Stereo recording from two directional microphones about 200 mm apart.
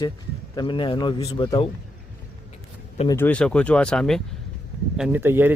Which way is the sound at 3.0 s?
10° left (ahead or behind).